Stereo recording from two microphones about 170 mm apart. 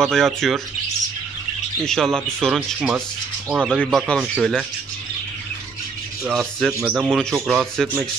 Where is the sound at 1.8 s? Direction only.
5° left (ahead or behind).